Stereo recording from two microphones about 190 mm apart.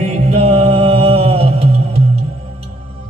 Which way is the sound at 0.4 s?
35° right (ahead or behind).